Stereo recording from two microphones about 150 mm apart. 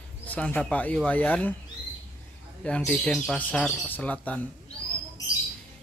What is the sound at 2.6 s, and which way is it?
Speech, 5° left (ahead or behind).